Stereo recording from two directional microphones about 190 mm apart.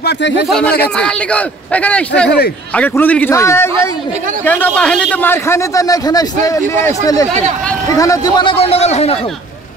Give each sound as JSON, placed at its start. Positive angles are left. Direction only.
{"t": 0.0, "sound": "speech", "side_deg": 60}
{"t": 0.5, "sound": "a man's voice", "side_deg": 5}
{"t": 2.2, "sound": "speech", "side_deg": 60}
{"t": 2.7, "sound": "a man's voice", "side_deg": 10}